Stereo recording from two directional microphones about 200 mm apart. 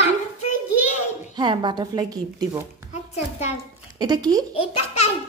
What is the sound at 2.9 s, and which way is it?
Speech, 35° left (ahead or behind).